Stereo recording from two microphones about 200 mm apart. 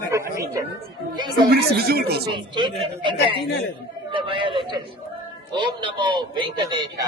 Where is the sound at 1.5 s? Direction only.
50° right (ahead or behind).